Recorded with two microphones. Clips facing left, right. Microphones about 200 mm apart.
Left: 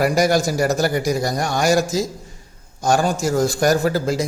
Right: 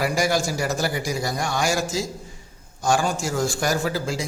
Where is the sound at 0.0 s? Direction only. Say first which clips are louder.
Left 5 dB; 45° left (ahead or behind).